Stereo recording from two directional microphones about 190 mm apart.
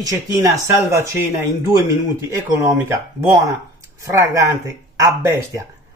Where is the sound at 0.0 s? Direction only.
15° right (ahead or behind).